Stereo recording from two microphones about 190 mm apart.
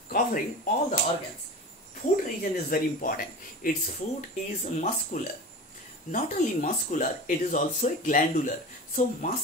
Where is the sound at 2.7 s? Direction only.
50° left (ahead or behind).